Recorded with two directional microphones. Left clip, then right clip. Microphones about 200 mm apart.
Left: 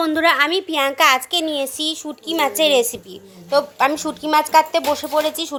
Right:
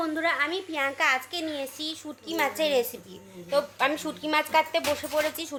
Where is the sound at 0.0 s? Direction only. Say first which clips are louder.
Left 10 dB; 55° left (ahead or behind).